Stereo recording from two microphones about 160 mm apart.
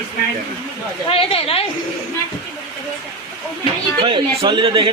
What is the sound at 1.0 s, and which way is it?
Speech, 35° left (ahead or behind).